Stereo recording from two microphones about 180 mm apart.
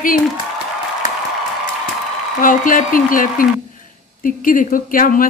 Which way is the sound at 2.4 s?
50° left (ahead or behind).